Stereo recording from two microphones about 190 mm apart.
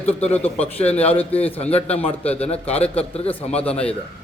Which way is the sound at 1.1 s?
30° left (ahead or behind).